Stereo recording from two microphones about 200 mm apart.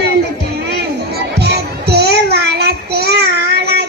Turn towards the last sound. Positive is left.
turn(degrees=-55)  # may be behind; listen again after turning